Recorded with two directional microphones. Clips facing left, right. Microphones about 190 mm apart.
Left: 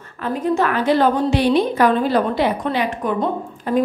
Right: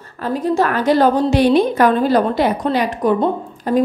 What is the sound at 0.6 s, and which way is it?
A woman's voice, 40° right (ahead or behind).